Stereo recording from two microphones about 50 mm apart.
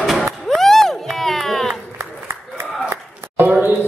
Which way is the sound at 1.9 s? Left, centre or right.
Right.